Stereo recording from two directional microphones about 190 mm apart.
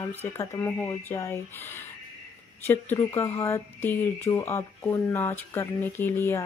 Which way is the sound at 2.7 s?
10° left (ahead or behind).